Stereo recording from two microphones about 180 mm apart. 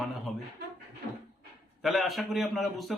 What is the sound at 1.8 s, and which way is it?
Speech, centre (ahead or behind).